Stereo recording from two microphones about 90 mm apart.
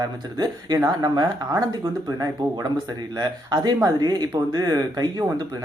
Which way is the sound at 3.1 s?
45° right (ahead or behind).